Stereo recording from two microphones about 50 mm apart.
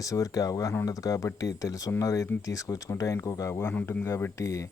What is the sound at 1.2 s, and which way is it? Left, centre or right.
Speech, left.